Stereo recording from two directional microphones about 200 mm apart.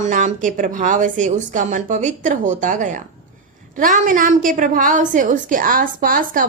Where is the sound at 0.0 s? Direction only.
40° right (ahead or behind).